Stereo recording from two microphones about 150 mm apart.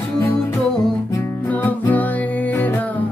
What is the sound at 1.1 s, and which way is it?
Music, 15° left (ahead or behind).